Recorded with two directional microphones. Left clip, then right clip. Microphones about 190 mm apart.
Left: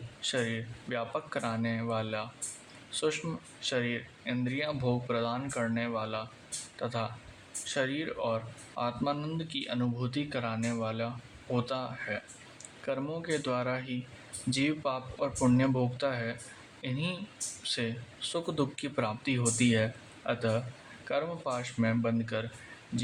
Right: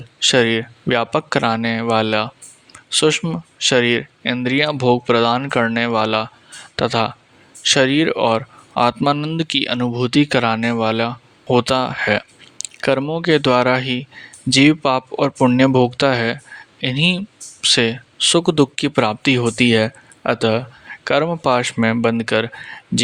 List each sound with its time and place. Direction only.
0.2 s speech: 50° right (ahead or behind)